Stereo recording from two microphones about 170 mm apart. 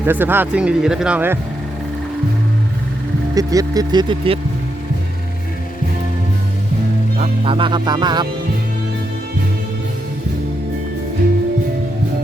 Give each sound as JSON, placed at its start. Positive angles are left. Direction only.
{"t": 0.0, "sound": "speech", "side_deg": -10}
{"t": 3.3, "sound": "speech", "side_deg": -20}
{"t": 7.2, "sound": "speech", "side_deg": -30}